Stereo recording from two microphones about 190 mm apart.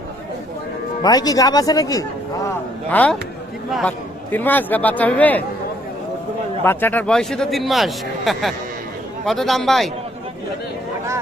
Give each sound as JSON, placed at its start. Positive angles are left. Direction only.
{"t": 1.0, "sound": "speech", "side_deg": 20}
{"t": 2.9, "sound": "a man's voice", "side_deg": 5}
{"t": 6.7, "sound": "speech", "side_deg": 10}